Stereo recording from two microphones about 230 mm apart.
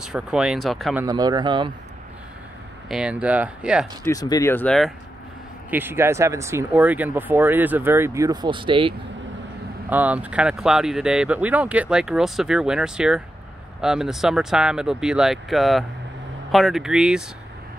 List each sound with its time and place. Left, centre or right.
0.0 s speech: centre
1.0 s speech: centre
2.9 s speech: centre
4.1 s speech: centre
5.7 s speech: centre
9.8 s speech: centre